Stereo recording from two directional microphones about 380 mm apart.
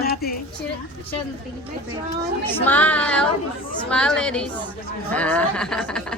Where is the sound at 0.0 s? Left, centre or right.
Left.